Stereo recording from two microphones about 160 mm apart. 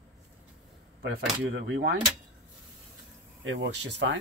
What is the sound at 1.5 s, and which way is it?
Speech, 85° right.